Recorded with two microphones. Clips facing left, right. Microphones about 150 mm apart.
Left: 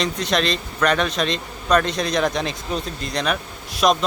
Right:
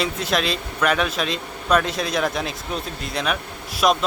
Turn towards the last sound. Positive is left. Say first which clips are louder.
# left 1 dB
turn(degrees=-5)  # may be behind; listen again after turning